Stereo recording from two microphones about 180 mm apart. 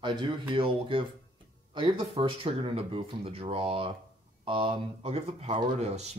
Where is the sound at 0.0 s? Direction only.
25° right (ahead or behind).